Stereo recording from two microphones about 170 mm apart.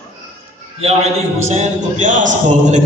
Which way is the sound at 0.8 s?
35° right (ahead or behind).